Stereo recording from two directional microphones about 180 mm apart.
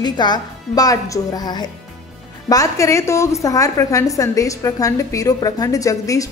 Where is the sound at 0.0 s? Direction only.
25° left (ahead or behind).